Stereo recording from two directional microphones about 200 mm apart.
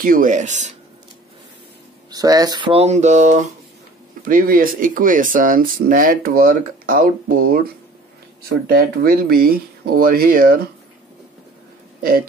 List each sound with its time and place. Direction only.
0.0 s speech: 45° right (ahead or behind)
2.0 s speech: 20° right (ahead or behind); by 10.7 s 45° right (ahead or behind)